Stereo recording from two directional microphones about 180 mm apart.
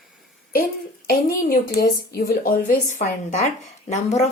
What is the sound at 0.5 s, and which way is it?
Speech, 55° left (ahead or behind).